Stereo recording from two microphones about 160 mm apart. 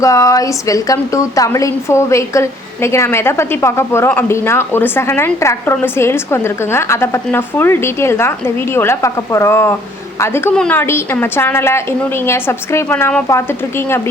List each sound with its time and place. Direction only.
0.0 s a woman's voice: 20° left (ahead or behind)